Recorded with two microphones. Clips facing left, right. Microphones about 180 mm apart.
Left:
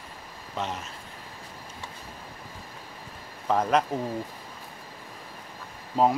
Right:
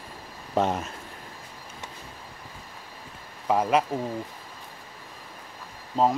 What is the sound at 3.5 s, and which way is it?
Speech, 5° right (ahead or behind).